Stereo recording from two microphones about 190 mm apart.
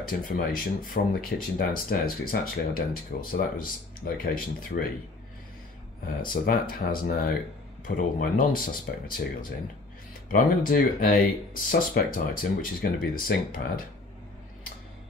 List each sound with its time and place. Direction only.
0.0 s speech: 45° left (ahead or behind)
6.2 s speech: 50° left (ahead or behind)